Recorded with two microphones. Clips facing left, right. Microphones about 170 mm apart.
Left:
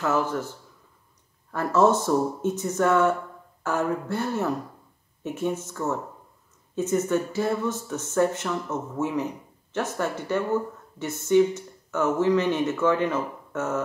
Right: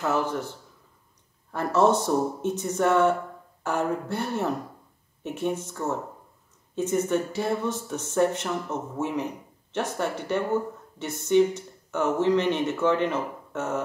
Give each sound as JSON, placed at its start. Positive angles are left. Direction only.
{"t": 0.0, "sound": "speech", "side_deg": -20}